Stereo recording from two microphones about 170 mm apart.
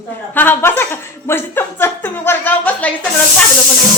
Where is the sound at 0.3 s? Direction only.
10° left (ahead or behind).